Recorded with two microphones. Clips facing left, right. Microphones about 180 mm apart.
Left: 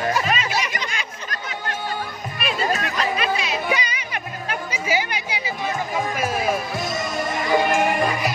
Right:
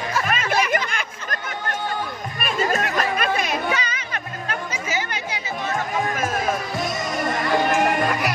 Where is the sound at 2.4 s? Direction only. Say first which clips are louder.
Right 1 dB; 40° right (ahead or behind).